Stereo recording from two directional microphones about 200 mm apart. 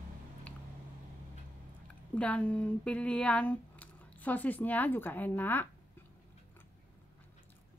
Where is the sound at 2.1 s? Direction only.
5° left (ahead or behind).